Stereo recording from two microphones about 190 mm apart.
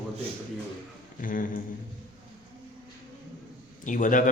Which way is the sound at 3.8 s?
45° left (ahead or behind).